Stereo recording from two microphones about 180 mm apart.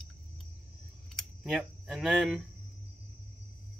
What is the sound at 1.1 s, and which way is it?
Speech, centre (ahead or behind).